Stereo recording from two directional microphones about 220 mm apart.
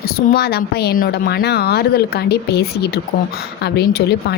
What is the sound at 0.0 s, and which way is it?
A woman's voice, 45° left (ahead or behind).